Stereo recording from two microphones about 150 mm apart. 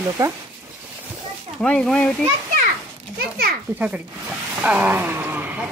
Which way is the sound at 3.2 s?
90° right.